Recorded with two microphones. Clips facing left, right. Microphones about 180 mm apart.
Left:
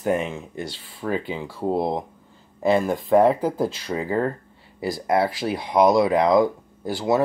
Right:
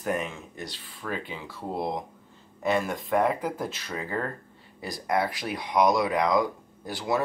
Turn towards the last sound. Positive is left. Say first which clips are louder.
# left 6 dB
turn(degrees=25)  # may be behind; listen again after turning